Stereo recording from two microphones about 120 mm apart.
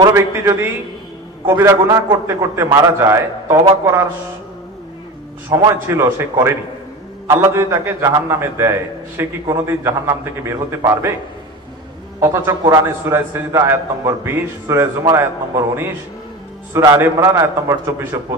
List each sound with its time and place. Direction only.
0.1 s a man's voice: 25° right (ahead or behind)
5.5 s a man's voice: 30° right (ahead or behind)
12.2 s a man's voice: 20° right (ahead or behind)
17.0 s a man's voice: 25° right (ahead or behind)